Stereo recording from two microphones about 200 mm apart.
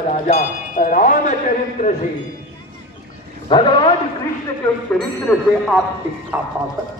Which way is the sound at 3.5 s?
25° left (ahead or behind).